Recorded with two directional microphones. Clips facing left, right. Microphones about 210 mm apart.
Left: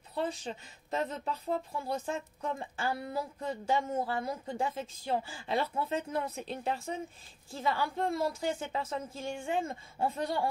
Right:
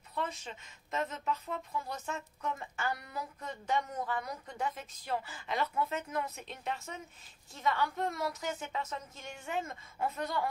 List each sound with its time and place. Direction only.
0.1 s a woman's voice: 35° left (ahead or behind)